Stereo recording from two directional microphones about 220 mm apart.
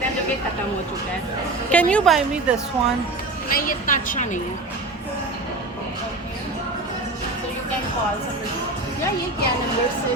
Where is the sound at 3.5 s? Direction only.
40° left (ahead or behind).